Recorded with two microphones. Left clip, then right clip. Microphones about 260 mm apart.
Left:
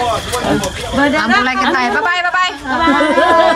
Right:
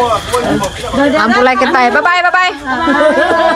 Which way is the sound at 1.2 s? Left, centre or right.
Centre.